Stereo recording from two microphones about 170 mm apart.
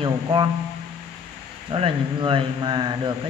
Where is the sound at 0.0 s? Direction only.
30° right (ahead or behind).